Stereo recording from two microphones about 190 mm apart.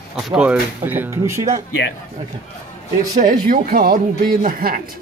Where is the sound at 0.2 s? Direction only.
5° right (ahead or behind).